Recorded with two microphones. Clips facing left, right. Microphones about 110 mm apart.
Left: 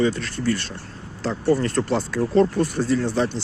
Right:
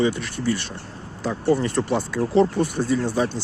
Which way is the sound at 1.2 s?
10° right (ahead or behind).